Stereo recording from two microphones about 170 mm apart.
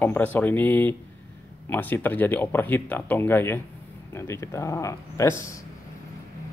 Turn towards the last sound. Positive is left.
turn(degrees=15)  # may be behind; listen again after turning